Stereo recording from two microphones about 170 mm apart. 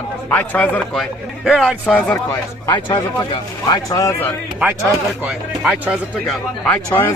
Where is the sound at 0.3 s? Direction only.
10° left (ahead or behind).